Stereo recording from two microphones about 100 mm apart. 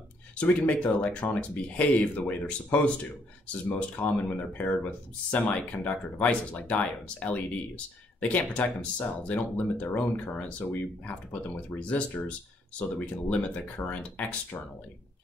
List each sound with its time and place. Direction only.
0.4 s speech: 15° left (ahead or behind)